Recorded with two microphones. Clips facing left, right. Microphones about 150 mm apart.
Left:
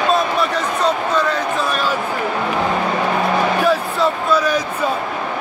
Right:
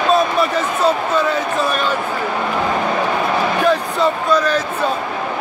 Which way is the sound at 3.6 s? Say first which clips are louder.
Right 1 dB; 5° left (ahead or behind).